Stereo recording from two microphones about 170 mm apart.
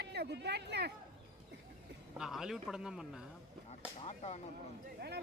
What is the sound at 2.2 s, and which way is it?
Speech, centre (ahead or behind).